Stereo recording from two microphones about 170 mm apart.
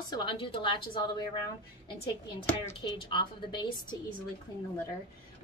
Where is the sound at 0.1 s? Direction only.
30° left (ahead or behind).